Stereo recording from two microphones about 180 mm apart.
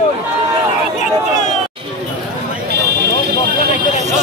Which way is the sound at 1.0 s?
40° left (ahead or behind).